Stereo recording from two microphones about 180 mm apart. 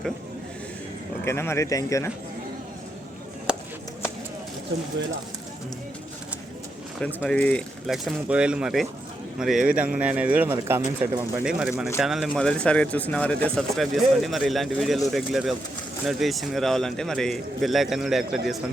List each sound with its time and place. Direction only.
1.2 s speech: 15° left (ahead or behind)
3.5 s a sound: 5° right (ahead or behind)
4.7 s speech: 85° right
7.3 s speech: 5° left (ahead or behind); by 11.5 s 15° right (ahead or behind)
11.9 s speech: centre (ahead or behind)